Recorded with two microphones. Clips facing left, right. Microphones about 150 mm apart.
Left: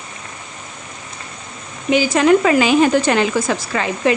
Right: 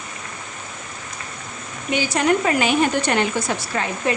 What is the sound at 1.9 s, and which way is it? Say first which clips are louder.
A woman's voice: left 6 dB; 90° left.